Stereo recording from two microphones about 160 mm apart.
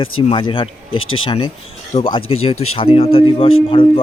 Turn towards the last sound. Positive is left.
turn(degrees=35)  # may be behind; listen again after turning